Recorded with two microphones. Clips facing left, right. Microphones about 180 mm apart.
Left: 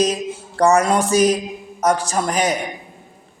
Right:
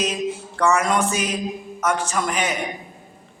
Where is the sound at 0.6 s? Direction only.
35° left (ahead or behind).